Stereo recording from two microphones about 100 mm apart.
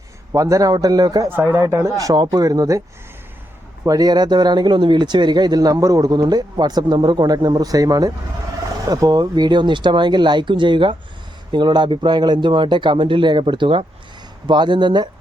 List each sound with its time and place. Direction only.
0.3 s speech: 35° right (ahead or behind)
1.4 s speech: 25° right (ahead or behind)
3.8 s speech: 40° right (ahead or behind)